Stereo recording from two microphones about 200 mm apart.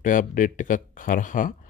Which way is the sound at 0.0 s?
40° left (ahead or behind).